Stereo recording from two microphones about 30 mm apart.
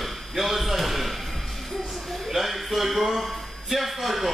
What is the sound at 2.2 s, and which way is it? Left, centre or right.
Speech, centre.